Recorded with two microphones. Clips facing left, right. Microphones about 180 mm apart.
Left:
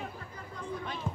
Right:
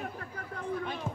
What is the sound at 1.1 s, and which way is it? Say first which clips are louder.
Music: even; 5° right (ahead or behind).